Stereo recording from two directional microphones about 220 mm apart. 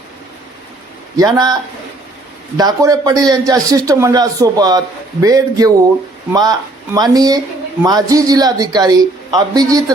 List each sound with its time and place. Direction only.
1.1 s speech: 15° right (ahead or behind)
2.6 s speech: 15° right (ahead or behind)